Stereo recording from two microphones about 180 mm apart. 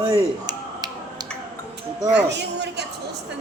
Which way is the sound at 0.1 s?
20° right (ahead or behind).